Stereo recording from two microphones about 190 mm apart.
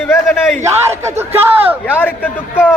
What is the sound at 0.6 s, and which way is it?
Speech, 15° right (ahead or behind).